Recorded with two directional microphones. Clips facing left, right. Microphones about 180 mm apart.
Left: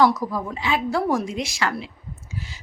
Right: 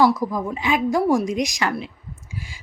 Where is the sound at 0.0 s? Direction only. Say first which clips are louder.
Right 1 dB; 10° right (ahead or behind).